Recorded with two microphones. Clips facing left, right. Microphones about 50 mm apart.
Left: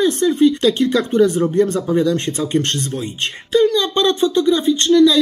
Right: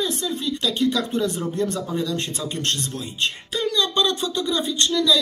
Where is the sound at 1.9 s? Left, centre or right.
Left.